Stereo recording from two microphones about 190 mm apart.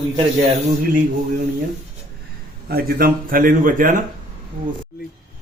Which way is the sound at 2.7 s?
50° right (ahead or behind).